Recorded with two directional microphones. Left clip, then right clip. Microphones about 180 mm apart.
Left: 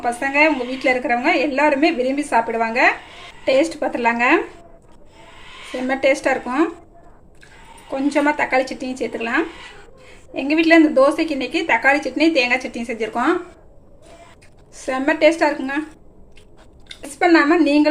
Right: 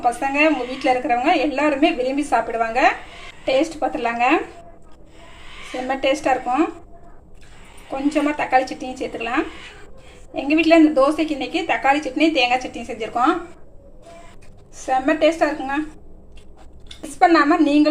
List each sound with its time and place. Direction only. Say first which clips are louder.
0.0 s a woman's voice: left 1 dB; 15° left (ahead or behind)
5.9 s a woman's voice: left 2 dB; 15° left (ahead or behind)
7.9 s a woman's voice: left 3 dB; 15° left (ahead or behind)
14.8 s speech: left 1 dB; 25° left (ahead or behind)
17.2 s a woman's voice: even; 15° left (ahead or behind)